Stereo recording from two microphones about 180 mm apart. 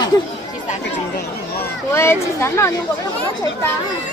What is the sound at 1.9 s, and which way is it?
Speech, 15° left (ahead or behind).